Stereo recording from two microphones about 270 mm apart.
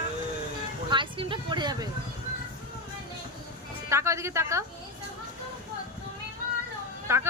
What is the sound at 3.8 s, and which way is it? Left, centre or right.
Speech, centre.